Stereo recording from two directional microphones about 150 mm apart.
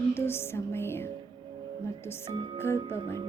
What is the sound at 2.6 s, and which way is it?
Music, 15° left (ahead or behind).